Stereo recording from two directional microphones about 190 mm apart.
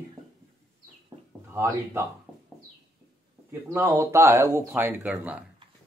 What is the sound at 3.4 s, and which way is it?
Speech, 15° right (ahead or behind).